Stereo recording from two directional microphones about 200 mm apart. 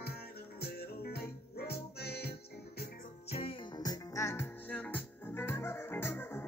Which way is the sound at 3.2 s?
30° left (ahead or behind).